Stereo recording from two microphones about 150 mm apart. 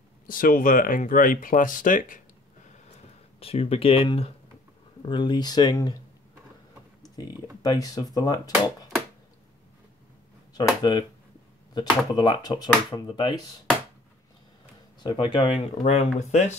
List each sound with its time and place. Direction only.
0.3 s speech: 65° left (ahead or behind)
3.3 s speech: 40° left (ahead or behind)
7.6 s speech: 25° left (ahead or behind)
10.5 s speech: 30° left (ahead or behind)
12.1 s speech: 30° left (ahead or behind)
15.0 s speech: 30° left (ahead or behind); by 16.5 s 50° left (ahead or behind)